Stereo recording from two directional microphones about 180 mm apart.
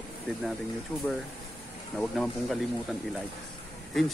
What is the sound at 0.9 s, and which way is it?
Speech, 5° left (ahead or behind).